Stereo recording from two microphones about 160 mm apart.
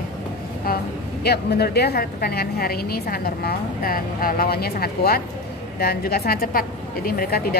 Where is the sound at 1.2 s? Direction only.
90° left.